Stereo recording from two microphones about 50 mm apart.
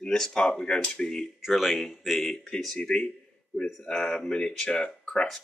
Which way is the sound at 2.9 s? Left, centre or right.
Left.